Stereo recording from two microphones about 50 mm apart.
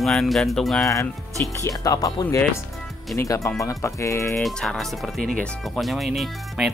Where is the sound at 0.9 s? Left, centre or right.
Left.